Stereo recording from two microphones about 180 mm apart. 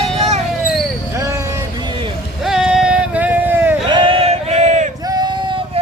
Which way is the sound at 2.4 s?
5° right (ahead or behind).